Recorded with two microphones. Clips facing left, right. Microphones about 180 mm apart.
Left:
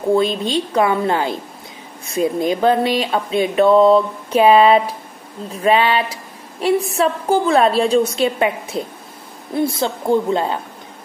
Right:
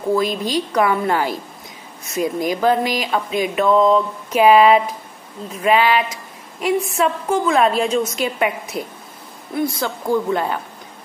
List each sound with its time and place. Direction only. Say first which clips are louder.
0.1 s a woman's voice: left 2 dB; 25° left (ahead or behind)
2.0 s a sound: left 3 dB; 30° left (ahead or behind)
9.6 s a woman's voice: left 3 dB; 25° left (ahead or behind)